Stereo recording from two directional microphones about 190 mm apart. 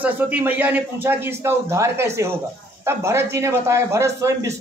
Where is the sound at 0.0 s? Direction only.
10° right (ahead or behind).